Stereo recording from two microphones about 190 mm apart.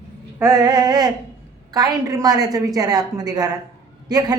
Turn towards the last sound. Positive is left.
turn(degrees=-20)  # may be behind; listen again after turning